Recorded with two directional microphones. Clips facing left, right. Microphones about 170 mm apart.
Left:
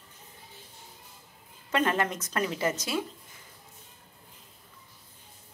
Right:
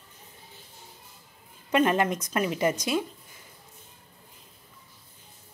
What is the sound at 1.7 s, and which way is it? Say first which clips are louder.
A woman's voice: right 4 dB; 15° right (ahead or behind).